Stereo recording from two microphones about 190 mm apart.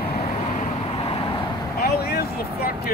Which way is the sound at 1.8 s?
55° left (ahead or behind).